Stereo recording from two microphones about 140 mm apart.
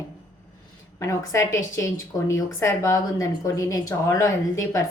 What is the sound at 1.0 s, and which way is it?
Speech, 20° left (ahead or behind).